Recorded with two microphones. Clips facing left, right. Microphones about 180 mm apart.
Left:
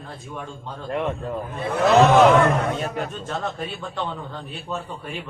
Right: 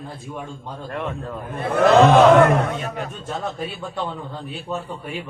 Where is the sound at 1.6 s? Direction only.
55° right (ahead or behind).